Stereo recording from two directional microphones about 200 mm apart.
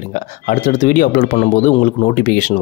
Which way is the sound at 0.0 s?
40° left (ahead or behind).